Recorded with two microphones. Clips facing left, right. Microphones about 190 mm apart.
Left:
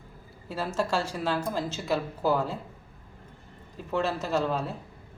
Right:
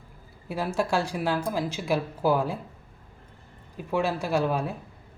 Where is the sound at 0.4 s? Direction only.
15° right (ahead or behind).